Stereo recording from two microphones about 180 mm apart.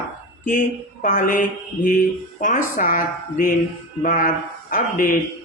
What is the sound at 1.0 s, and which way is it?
A man's voice, 50° left (ahead or behind).